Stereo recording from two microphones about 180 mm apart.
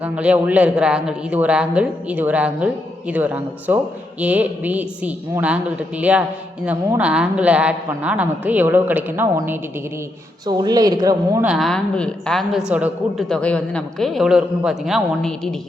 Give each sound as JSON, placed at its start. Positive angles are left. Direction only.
{"t": 0.0, "sound": "a woman's voice", "side_deg": -10}
{"t": 11.4, "sound": "a man's voice", "side_deg": 0}
{"t": 13.2, "sound": "a man's voice", "side_deg": 5}